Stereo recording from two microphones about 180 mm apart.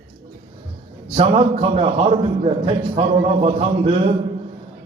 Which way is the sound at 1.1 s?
35° right (ahead or behind).